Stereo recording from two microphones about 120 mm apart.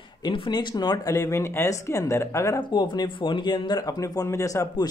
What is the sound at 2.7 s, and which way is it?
Speech, 40° left (ahead or behind).